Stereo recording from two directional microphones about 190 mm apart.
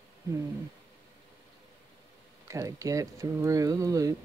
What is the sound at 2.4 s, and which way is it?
Speech, 15° right (ahead or behind).